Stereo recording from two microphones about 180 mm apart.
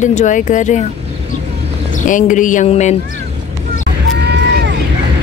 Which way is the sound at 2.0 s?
45° left (ahead or behind).